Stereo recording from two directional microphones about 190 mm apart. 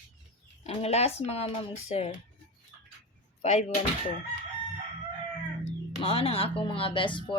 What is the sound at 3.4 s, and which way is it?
Speech, 35° left (ahead or behind).